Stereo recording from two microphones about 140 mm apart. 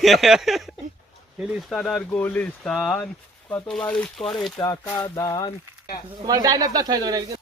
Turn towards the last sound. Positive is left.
turn(degrees=-30)  # may be behind; listen again after turning